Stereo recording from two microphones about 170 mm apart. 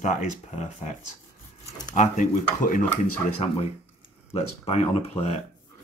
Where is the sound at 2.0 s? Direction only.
45° left (ahead or behind).